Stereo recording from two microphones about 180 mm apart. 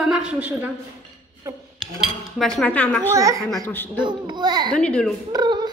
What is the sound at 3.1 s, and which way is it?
A child's voice, 15° right (ahead or behind).